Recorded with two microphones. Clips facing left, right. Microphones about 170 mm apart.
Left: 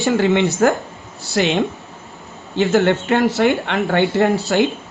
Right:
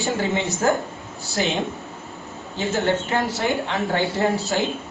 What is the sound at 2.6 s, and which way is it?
Speech, 70° left (ahead or behind).